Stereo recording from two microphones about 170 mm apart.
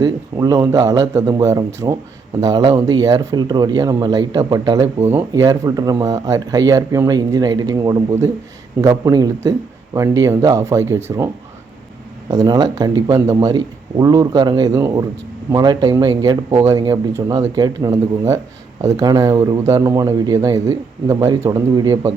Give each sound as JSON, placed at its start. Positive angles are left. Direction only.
{"t": 0.0, "sound": "speech", "side_deg": -20}
{"t": 12.3, "sound": "speech", "side_deg": -25}
{"t": 16.5, "sound": "speech", "side_deg": -35}
{"t": 16.7, "sound": "speech", "side_deg": -20}